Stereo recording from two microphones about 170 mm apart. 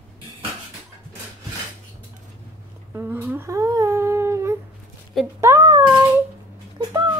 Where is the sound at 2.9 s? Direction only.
10° right (ahead or behind).